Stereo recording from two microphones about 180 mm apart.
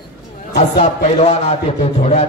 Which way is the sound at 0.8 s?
35° left (ahead or behind).